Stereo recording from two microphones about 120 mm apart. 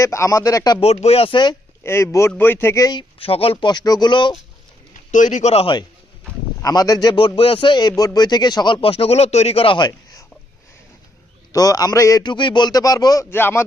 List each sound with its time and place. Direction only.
0.0 s speech: 25° left (ahead or behind)
0.8 s speech: 60° left (ahead or behind); by 1.5 s 40° left (ahead or behind)
1.8 s speech: 20° left (ahead or behind); by 3.2 s 40° left (ahead or behind)
3.2 s speech: 50° left (ahead or behind)
3.7 s a man's voice: 35° left (ahead or behind)
5.1 s speech: 90° left; by 5.6 s 70° left (ahead or behind)
6.6 s speech: 30° left (ahead or behind)
7.2 s a man's voice: 50° left (ahead or behind)
11.5 s a man's voice: 30° left (ahead or behind)
13.3 s speech: 20° left (ahead or behind)